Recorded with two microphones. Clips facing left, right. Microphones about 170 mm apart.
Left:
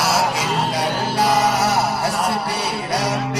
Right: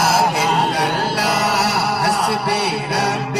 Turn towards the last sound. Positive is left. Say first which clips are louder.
# right 2 dB
turn(degrees=-65)  # may be behind; listen again after turning